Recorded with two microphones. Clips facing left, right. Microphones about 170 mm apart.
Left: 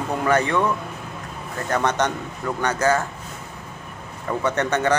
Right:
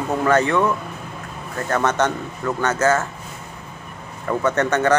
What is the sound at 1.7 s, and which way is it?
Speech, 15° left (ahead or behind).